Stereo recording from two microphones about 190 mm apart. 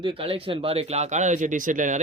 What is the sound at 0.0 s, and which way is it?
Speech, 30° right (ahead or behind).